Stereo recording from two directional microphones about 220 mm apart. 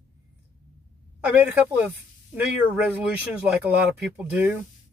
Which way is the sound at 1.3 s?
5° right (ahead or behind).